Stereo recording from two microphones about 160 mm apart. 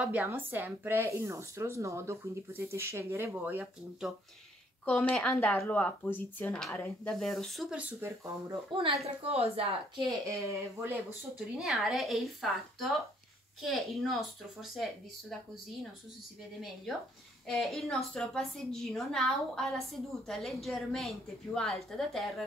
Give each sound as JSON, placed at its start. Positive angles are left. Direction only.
{"t": 0.0, "sound": "speech", "side_deg": -10}
{"t": 4.8, "sound": "a woman's voice", "side_deg": 5}
{"t": 8.7, "sound": "a woman's voice", "side_deg": -35}
{"t": 10.0, "sound": "speech", "side_deg": -20}
{"t": 11.6, "sound": "a woman's voice", "side_deg": 0}
{"t": 17.5, "sound": "a woman's voice", "side_deg": 0}